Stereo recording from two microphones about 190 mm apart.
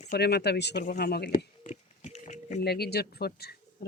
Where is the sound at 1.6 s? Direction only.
40° left (ahead or behind).